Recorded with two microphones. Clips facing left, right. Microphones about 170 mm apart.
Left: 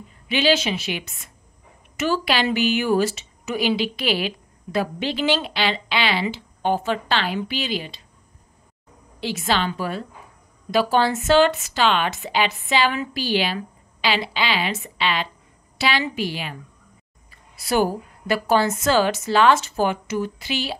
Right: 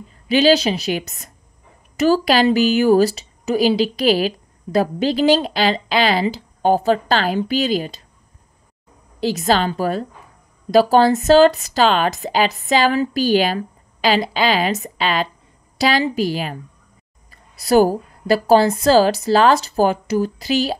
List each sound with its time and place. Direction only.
0.3 s a woman's voice: 40° right (ahead or behind)
9.2 s a woman's voice: 40° right (ahead or behind)